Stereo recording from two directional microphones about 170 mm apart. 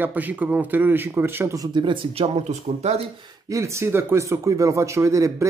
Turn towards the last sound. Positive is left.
turn(degrees=-20)  # may be behind; listen again after turning